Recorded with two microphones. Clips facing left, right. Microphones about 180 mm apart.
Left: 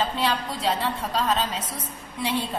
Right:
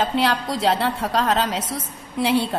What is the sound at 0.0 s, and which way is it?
A woman's voice, 75° right (ahead or behind).